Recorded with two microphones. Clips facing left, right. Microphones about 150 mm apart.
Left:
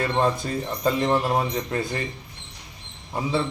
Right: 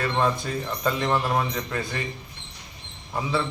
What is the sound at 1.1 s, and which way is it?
Speech, 25° left (ahead or behind).